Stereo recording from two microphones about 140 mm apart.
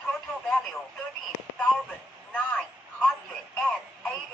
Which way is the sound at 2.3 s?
10° left (ahead or behind).